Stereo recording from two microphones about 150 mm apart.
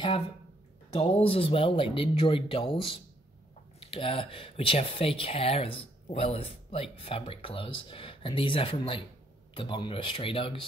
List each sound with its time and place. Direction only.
0.9 s speech: 40° left (ahead or behind)